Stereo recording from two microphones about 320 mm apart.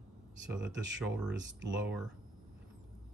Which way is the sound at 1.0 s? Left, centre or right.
Centre.